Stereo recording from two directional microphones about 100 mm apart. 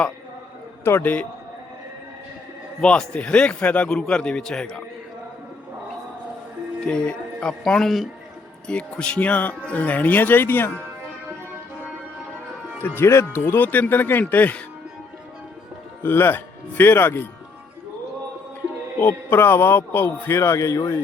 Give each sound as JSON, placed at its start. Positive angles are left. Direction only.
{"t": 0.9, "sound": "speech", "side_deg": 20}
{"t": 2.8, "sound": "speech", "side_deg": 10}
{"t": 6.8, "sound": "speech", "side_deg": 10}
{"t": 13.0, "sound": "a man's voice", "side_deg": 25}
{"t": 16.0, "sound": "a man's voice", "side_deg": 20}
{"t": 18.9, "sound": "a man's voice", "side_deg": 20}